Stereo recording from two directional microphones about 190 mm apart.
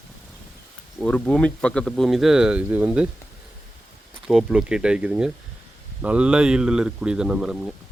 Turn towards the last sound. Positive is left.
turn(degrees=-5)  # may be behind; listen again after turning